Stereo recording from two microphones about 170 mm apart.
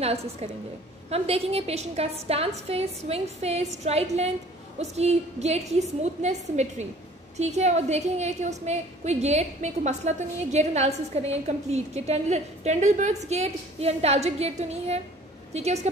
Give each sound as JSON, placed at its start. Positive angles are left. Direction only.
{"t": 0.0, "sound": "a woman's voice", "side_deg": -40}